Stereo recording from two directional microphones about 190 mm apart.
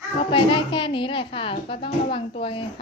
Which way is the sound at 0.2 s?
25° left (ahead or behind).